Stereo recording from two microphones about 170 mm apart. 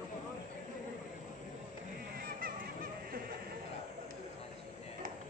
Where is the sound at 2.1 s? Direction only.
60° right (ahead or behind).